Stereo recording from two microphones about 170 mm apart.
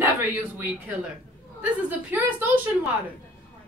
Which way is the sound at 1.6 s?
10° right (ahead or behind).